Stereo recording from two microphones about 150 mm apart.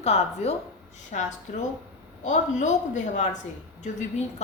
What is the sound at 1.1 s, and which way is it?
Speech, 60° left (ahead or behind).